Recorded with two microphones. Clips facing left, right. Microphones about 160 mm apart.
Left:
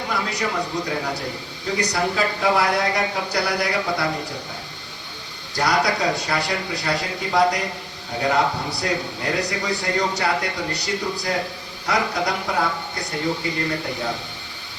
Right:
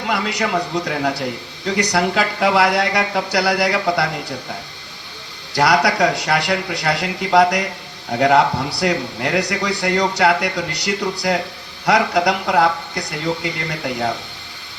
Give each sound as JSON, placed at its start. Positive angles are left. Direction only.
{"t": 0.1, "sound": "a man's voice", "side_deg": -80}
{"t": 5.5, "sound": "speech", "side_deg": -85}